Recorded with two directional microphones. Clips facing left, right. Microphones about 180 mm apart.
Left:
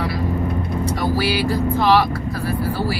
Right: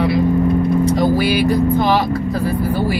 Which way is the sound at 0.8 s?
20° right (ahead or behind).